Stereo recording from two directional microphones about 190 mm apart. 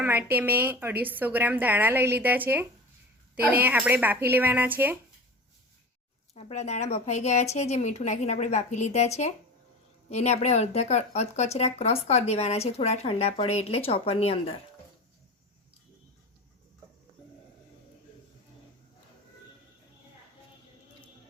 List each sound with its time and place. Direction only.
0.0 s a woman's voice: 10° right (ahead or behind)
6.3 s speech: 35° left (ahead or behind)